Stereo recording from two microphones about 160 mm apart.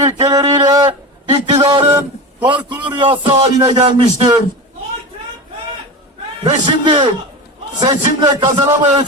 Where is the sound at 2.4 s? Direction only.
30° right (ahead or behind).